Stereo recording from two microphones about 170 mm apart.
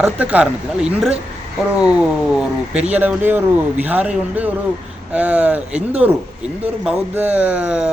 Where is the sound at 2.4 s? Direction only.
5° right (ahead or behind).